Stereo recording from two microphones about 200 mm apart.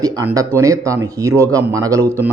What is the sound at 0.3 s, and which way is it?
Speech, 15° right (ahead or behind).